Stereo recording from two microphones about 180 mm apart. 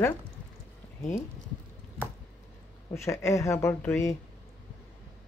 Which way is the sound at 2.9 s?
15° left (ahead or behind).